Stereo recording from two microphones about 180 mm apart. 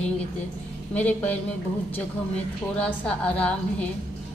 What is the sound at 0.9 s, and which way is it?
Speech, 10° left (ahead or behind).